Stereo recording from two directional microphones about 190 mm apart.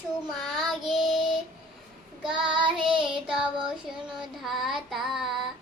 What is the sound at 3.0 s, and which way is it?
Child singing, 5° right (ahead or behind).